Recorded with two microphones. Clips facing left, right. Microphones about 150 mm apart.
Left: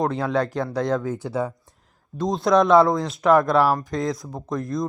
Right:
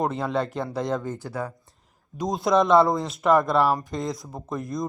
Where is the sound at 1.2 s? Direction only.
20° left (ahead or behind).